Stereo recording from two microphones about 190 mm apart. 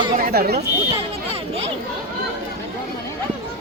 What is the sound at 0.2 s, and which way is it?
Speech, 50° right (ahead or behind).